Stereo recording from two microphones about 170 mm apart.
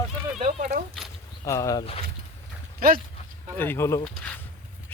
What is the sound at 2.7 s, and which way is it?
Speech, 60° right (ahead or behind).